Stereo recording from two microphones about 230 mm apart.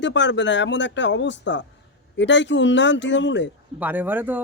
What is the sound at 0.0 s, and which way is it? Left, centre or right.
Speech, left.